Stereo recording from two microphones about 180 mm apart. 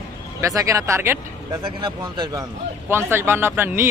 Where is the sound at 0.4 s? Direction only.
15° right (ahead or behind).